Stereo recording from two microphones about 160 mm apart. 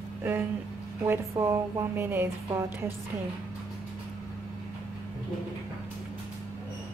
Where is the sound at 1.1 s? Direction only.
20° right (ahead or behind).